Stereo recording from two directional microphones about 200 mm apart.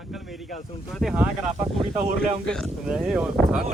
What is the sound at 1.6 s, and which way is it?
Speech, 30° right (ahead or behind).